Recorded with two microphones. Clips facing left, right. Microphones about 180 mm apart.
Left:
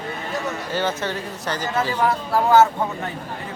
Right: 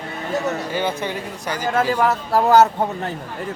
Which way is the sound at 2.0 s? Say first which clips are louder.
Right 2 dB; 40° right (ahead or behind).